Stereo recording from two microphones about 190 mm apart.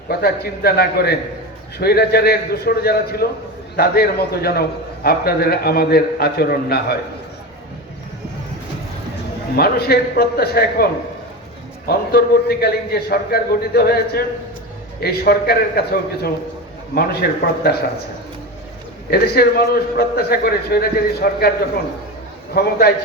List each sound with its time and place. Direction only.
0.1 s a man's voice: 55° left (ahead or behind)
9.6 s a man's voice: 55° left (ahead or behind)
11.9 s a man's voice: 55° left (ahead or behind)
19.1 s a man's voice: 55° left (ahead or behind)
22.5 s a man's voice: 55° left (ahead or behind)